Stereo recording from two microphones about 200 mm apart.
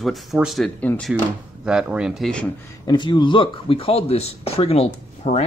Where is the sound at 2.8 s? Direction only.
20° left (ahead or behind).